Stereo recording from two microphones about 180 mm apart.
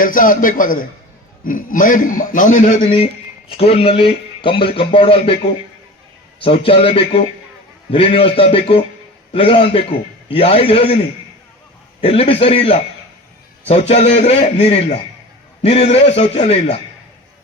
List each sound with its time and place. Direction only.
0.0 s a man's voice: 50° left (ahead or behind)
3.6 s speech: 35° left (ahead or behind)
6.4 s speech: 30° left (ahead or behind)
12.0 s speech: 35° left (ahead or behind)